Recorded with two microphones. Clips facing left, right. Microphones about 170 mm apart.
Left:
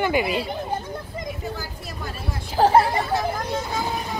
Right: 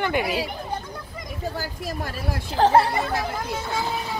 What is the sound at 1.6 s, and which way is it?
Speech, 85° right.